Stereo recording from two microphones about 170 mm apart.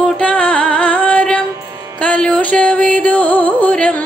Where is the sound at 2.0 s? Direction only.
5° left (ahead or behind).